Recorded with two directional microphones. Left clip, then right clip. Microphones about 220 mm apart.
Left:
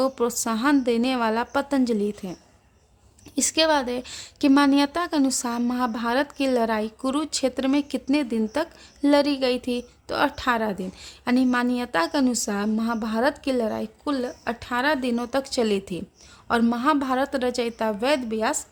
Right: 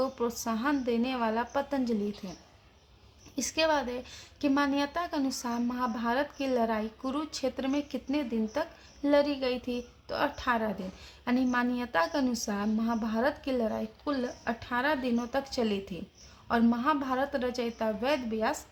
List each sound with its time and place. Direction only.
0.0 s a woman's voice: 50° left (ahead or behind)